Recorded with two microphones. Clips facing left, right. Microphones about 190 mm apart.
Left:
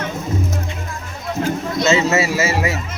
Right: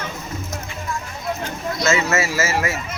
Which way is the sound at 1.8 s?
20° left (ahead or behind).